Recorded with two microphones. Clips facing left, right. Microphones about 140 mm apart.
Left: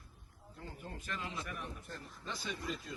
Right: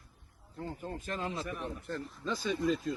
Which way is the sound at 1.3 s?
30° right (ahead or behind).